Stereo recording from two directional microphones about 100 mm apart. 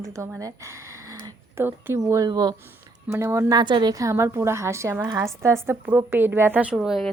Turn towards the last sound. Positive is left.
turn(degrees=0)  # may be behind; listen again after turning